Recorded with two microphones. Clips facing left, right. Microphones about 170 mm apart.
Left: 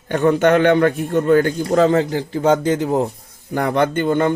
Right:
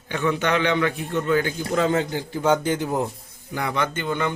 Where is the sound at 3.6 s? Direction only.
50° left (ahead or behind).